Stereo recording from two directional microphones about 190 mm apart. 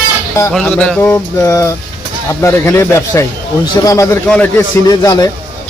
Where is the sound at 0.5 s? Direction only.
10° left (ahead or behind).